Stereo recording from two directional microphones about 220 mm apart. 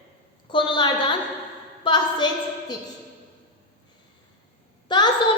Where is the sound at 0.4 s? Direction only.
20° left (ahead or behind).